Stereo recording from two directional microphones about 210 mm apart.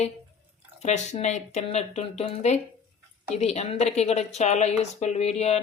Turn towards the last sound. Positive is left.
turn(degrees=30)  # may be behind; listen again after turning